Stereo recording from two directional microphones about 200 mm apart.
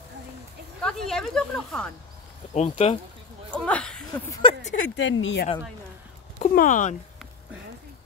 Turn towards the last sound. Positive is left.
turn(degrees=40)  # may be behind; listen again after turning